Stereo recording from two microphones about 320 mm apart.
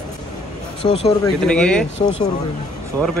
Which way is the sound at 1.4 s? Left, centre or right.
Centre.